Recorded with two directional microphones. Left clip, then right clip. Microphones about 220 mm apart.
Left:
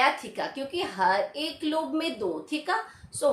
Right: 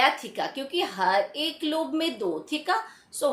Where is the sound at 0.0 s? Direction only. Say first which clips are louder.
Right 1 dB; 20° right (ahead or behind).